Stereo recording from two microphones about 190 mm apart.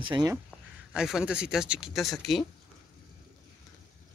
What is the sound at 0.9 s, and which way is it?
Speech, 5° right (ahead or behind).